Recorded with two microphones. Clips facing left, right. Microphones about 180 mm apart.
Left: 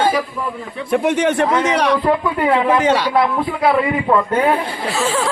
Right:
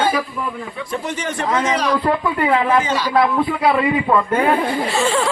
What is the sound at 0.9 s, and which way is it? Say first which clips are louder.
A man's voice: left 11 dB; 60° left (ahead or behind).